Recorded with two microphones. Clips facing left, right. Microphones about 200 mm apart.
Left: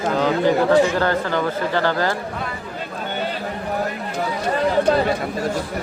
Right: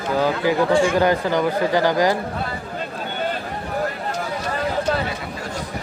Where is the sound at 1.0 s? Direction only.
15° right (ahead or behind).